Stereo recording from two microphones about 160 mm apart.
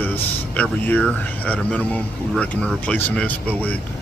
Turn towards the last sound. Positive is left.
turn(degrees=10)  # may be behind; listen again after turning